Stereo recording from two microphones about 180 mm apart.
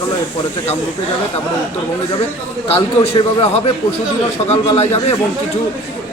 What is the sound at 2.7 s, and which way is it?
A man's voice, 35° left (ahead or behind).